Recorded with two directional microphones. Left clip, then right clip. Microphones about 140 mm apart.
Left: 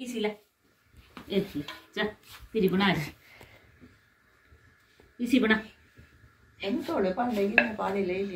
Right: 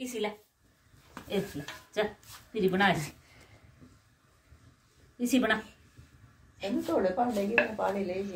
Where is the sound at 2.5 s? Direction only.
55° right (ahead or behind).